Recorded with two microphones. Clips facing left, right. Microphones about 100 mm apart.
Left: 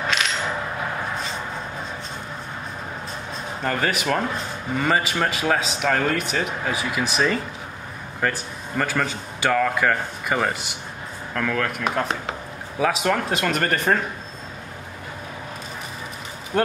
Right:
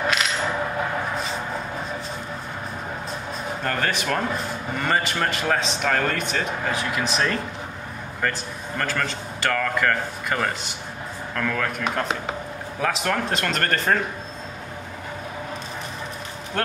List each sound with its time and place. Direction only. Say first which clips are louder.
3.6 s a man's voice: left 2 dB; 5° left (ahead or behind)
16.5 s speech: left 5 dB; 10° left (ahead or behind)